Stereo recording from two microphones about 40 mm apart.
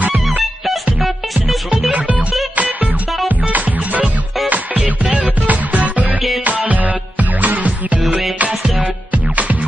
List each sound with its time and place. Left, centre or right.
0.0 s music: right
1.0 s music: centre
1.9 s music: right